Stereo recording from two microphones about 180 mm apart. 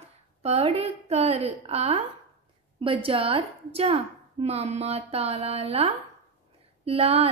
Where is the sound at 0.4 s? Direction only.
35° right (ahead or behind).